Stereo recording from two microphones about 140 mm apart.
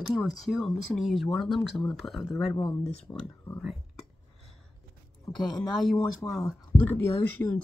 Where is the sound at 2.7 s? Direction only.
45° left (ahead or behind).